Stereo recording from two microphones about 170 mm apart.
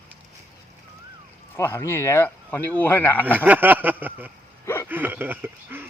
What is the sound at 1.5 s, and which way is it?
Speech, 15° left (ahead or behind).